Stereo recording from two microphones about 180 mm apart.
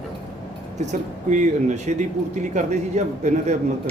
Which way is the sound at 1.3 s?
40° right (ahead or behind).